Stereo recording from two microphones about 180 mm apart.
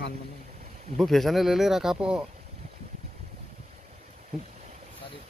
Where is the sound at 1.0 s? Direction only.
Centre (ahead or behind).